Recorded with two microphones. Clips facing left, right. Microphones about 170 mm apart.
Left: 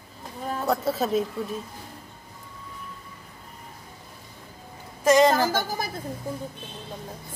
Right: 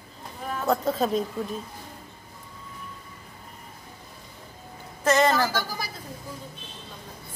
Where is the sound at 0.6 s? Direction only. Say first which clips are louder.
Right 1 dB; 5° left (ahead or behind).